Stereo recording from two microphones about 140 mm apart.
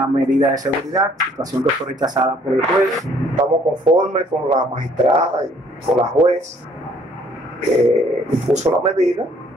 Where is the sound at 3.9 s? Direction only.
5° right (ahead or behind).